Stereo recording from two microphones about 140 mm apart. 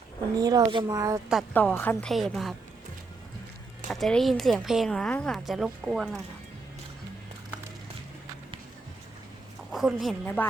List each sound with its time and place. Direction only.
0.3 s speech: 25° right (ahead or behind)
1.5 s a woman's voice: 15° left (ahead or behind)
3.8 s a woman's voice: 5° left (ahead or behind)
9.7 s speech: centre (ahead or behind)
10.2 s a woman's voice: 15° left (ahead or behind)